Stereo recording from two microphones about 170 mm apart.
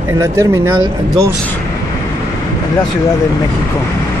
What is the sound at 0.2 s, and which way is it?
Speech, 20° right (ahead or behind).